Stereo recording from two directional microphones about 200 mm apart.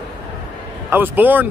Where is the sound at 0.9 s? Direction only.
10° right (ahead or behind).